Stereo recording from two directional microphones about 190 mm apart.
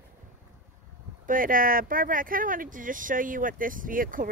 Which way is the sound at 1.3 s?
45° right (ahead or behind).